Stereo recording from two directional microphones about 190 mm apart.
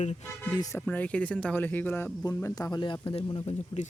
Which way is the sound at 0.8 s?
5° left (ahead or behind).